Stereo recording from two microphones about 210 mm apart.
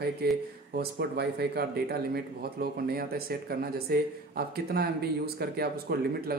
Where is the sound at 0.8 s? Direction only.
50° right (ahead or behind).